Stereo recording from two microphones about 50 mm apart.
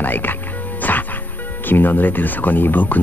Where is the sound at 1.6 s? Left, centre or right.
Left.